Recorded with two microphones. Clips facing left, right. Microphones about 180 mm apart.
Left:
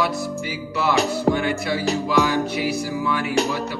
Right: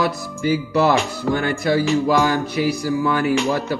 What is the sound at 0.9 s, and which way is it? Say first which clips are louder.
Speech: even; 40° left (ahead or behind).